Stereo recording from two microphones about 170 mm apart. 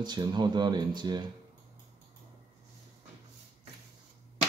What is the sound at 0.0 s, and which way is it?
Speech, 25° right (ahead or behind).